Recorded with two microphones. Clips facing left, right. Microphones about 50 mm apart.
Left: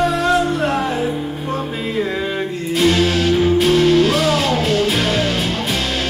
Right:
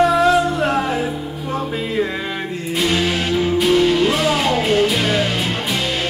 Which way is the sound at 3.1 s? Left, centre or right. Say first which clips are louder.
Left 3 dB; right.